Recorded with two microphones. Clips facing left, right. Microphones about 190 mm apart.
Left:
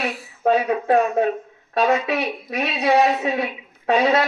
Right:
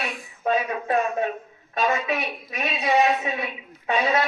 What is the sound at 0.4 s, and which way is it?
Speech, 70° left (ahead or behind).